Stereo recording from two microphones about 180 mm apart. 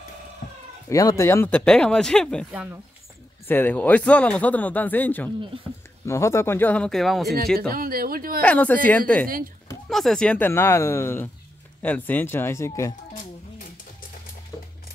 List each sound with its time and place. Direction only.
0.8 s speech: 15° left (ahead or behind); by 2.8 s 5° right (ahead or behind)
3.4 s speech: 10° left (ahead or behind)
7.5 s speech: 55° right (ahead or behind)
8.4 s speech: 10° left (ahead or behind)